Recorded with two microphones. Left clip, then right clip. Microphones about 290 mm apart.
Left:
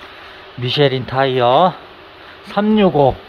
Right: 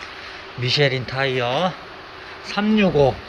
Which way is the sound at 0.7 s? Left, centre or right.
Left.